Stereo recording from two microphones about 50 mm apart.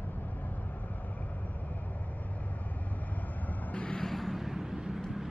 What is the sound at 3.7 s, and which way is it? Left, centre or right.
Vehicle, left.